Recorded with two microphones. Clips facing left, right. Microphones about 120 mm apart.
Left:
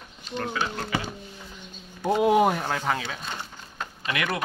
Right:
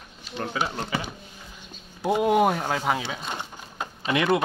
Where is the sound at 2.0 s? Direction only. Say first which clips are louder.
Even; 5° right (ahead or behind).